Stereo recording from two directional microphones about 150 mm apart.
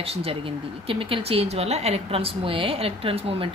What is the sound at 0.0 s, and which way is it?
Speech, 40° right (ahead or behind).